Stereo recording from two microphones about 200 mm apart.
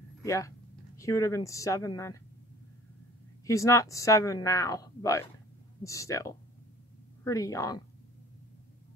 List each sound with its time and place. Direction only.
0.2 s speech: 15° left (ahead or behind)
3.4 s speech: 15° left (ahead or behind)